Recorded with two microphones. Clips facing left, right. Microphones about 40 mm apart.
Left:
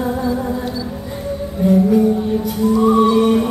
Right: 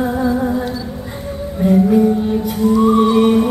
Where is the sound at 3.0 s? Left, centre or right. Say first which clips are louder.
Even; right.